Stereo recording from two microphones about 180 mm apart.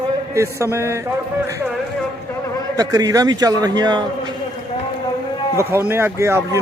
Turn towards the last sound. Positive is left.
turn(degrees=-15)  # may be behind; listen again after turning